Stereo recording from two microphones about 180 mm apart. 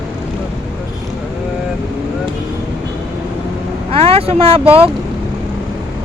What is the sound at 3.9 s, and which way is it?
Speech, 30° right (ahead or behind).